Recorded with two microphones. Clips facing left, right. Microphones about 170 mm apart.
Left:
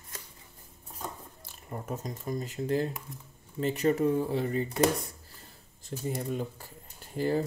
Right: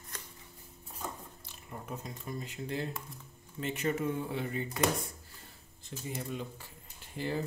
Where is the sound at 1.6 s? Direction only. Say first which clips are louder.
Left 6 dB; 45° left (ahead or behind).